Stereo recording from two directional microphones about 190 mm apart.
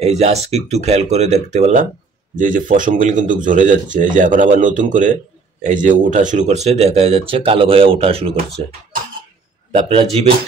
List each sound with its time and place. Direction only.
0.0 s speech: 35° right (ahead or behind)
9.8 s speech: 30° right (ahead or behind)